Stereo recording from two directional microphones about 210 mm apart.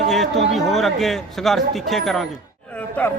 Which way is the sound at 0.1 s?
Centre (ahead or behind).